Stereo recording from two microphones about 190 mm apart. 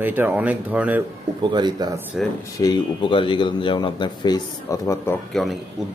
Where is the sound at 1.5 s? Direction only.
25° right (ahead or behind).